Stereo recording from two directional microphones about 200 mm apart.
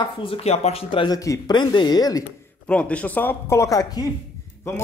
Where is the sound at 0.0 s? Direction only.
25° left (ahead or behind).